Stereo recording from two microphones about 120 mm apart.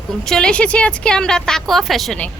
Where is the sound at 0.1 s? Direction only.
5° left (ahead or behind).